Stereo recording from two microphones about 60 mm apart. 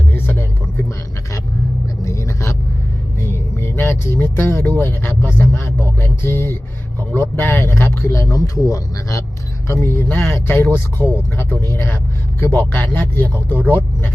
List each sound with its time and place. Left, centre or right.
0.1 s a sound: left
2.0 s vehicle: left
3.2 s a sound: left
5.5 s speech: left
9.6 s speech: left
9.9 s speech: left